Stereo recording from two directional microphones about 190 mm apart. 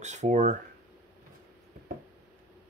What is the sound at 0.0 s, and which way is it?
Speech, 40° right (ahead or behind).